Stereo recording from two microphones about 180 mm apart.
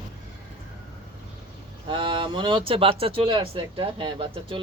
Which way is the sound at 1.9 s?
25° right (ahead or behind).